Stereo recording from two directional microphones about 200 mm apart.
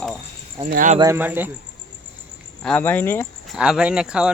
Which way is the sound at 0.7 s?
40° right (ahead or behind).